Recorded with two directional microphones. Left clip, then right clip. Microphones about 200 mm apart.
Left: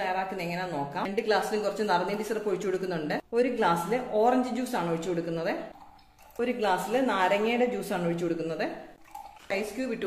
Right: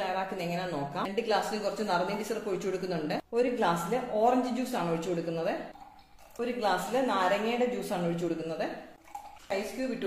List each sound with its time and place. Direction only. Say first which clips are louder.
0.0 s a woman's voice: left 2 dB; 10° left (ahead or behind); by 8.6 s 30° left (ahead or behind)